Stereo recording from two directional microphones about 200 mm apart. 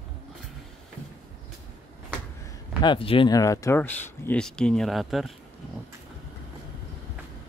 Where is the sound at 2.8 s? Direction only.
25° left (ahead or behind); by 5.3 s centre (ahead or behind).